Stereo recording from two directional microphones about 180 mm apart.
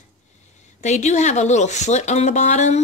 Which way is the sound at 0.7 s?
40° left (ahead or behind).